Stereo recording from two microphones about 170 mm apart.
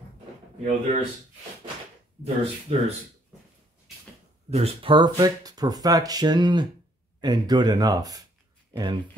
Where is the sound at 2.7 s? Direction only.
35° right (ahead or behind).